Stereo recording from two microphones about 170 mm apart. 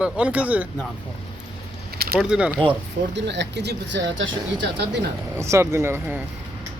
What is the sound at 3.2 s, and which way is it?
Speech, 90° right.